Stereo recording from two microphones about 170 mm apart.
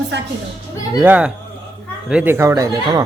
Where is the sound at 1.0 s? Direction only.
10° right (ahead or behind).